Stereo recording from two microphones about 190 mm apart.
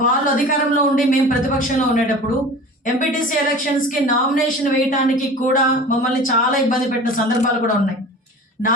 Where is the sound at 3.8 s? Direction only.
45° left (ahead or behind).